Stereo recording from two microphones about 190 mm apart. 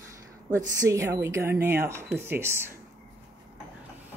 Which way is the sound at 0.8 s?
15° right (ahead or behind).